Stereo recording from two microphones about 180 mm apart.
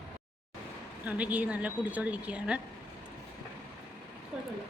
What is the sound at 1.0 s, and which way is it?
Speech, 10° right (ahead or behind).